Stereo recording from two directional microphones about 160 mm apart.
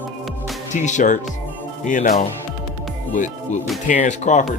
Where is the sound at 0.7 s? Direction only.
50° left (ahead or behind).